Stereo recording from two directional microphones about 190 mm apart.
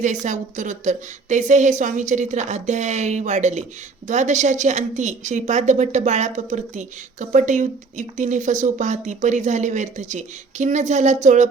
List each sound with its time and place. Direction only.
0.0 s a woman's voice: 40° right (ahead or behind)